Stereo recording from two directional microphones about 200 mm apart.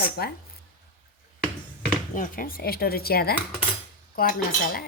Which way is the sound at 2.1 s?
45° left (ahead or behind).